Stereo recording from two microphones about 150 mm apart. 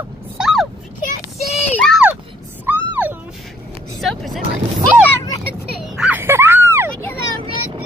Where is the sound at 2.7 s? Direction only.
10° right (ahead or behind).